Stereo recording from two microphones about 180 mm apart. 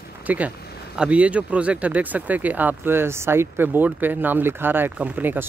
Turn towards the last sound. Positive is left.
turn(degrees=-10)  # may be behind; listen again after turning